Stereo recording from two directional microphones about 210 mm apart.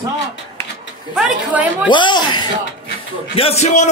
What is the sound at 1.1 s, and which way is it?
Speech, 5° right (ahead or behind).